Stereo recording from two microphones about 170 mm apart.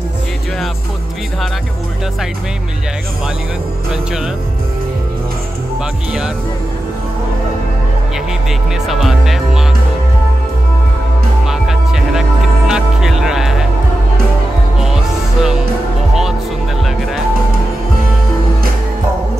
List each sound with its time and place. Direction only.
8.8 s speech: centre (ahead or behind)
11.4 s music: centre (ahead or behind)